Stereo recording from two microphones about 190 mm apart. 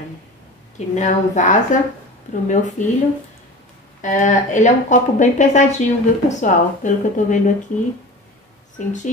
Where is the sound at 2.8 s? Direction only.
40° left (ahead or behind).